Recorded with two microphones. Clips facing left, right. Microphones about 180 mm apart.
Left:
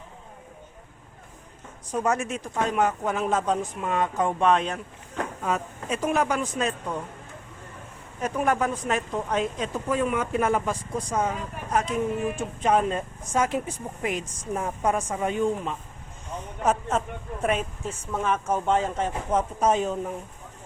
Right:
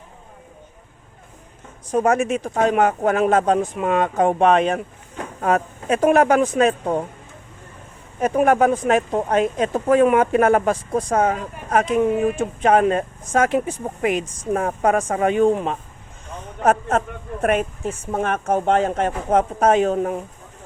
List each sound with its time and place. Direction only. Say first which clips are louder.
2.0 s speech: right 6 dB; 80° right; by 7.0 s 55° right (ahead or behind)
8.2 s speech: right 8 dB; 55° right (ahead or behind)
11.7 s speech: right 8 dB; 90° right; by 15.8 s 65° right (ahead or behind)
17.4 s speech: right 6 dB; 60° right (ahead or behind)